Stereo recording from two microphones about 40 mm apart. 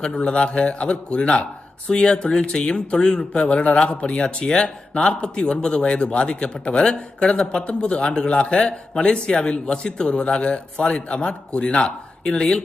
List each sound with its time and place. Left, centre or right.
0.2 s speech: left